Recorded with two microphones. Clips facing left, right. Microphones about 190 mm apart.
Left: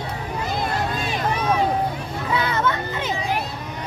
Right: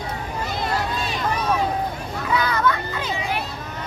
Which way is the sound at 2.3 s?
25° left (ahead or behind).